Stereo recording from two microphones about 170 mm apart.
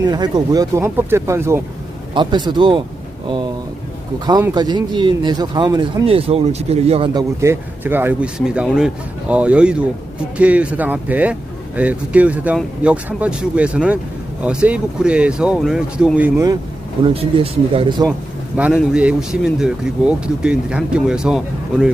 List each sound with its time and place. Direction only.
0.0 s speech: 25° right (ahead or behind)
2.1 s speech: 25° right (ahead or behind)
4.3 s speech: 20° right (ahead or behind)
7.1 s speech: 20° right (ahead or behind)
17.0 s speech: 30° right (ahead or behind)
18.5 s speech: 5° right (ahead or behind)